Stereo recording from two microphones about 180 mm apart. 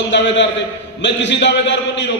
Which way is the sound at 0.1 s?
80° left.